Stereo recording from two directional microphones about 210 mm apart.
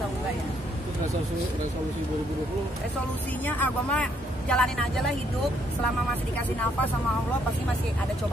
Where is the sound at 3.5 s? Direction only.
5° left (ahead or behind).